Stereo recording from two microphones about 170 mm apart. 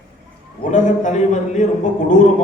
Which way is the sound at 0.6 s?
45° left (ahead or behind).